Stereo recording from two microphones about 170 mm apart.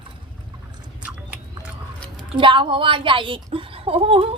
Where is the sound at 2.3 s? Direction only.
30° right (ahead or behind).